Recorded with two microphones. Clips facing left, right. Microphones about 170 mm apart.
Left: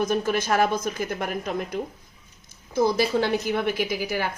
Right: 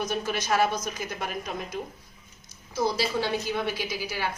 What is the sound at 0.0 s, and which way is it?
A woman's voice, 50° left (ahead or behind).